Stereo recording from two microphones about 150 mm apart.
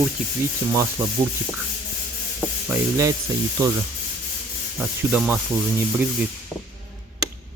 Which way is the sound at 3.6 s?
20° right (ahead or behind).